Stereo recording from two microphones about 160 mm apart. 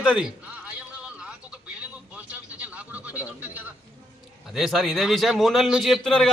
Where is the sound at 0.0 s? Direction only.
5° right (ahead or behind).